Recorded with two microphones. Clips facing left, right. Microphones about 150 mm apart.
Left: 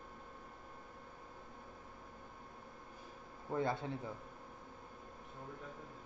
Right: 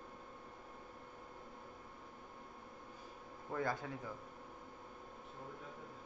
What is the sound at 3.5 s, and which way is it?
Speech, 25° left (ahead or behind).